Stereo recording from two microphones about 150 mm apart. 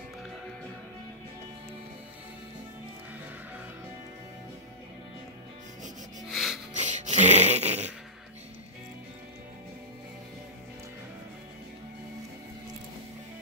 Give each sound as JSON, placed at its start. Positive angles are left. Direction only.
{"t": 6.2, "sound": "music", "side_deg": 0}
{"t": 6.7, "sound": "music", "side_deg": -50}